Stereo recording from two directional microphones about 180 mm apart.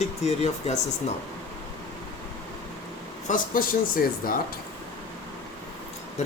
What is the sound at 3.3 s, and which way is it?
Speech, 55° left (ahead or behind).